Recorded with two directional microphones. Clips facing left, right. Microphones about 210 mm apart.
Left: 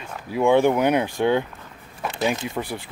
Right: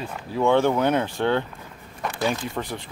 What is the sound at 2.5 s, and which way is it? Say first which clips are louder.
Speech: left 2 dB; 10° left (ahead or behind).